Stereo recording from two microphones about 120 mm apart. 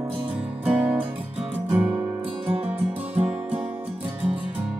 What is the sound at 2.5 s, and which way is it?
Music, 10° right (ahead or behind).